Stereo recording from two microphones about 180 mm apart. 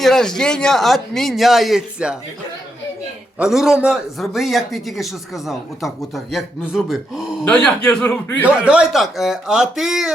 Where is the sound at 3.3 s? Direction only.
5° right (ahead or behind).